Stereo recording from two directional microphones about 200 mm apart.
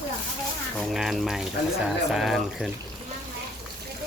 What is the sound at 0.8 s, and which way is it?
Speech, centre (ahead or behind).